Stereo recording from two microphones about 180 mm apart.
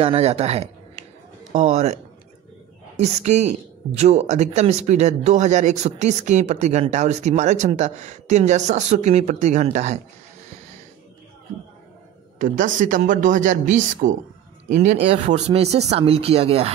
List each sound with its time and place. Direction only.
0.0 s speech: 35° right (ahead or behind)
3.0 s speech: 40° right (ahead or behind)
12.4 s speech: 45° right (ahead or behind)